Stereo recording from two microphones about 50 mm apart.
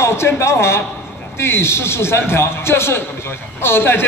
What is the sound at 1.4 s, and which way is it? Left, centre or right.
A man's voice, left.